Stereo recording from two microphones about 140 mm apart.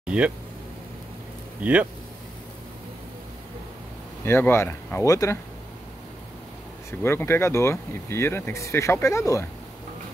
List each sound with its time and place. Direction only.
0.0 s a sound: 10° right (ahead or behind)
1.6 s speech: 10° right (ahead or behind)
4.2 s speech: 15° left (ahead or behind)
6.9 s speech: 15° left (ahead or behind)